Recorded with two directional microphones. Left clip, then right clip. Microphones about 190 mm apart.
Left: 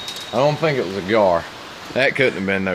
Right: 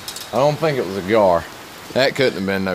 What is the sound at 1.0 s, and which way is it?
Speech, 25° right (ahead or behind).